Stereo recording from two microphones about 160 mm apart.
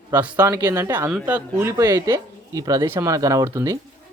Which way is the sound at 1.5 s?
20° right (ahead or behind).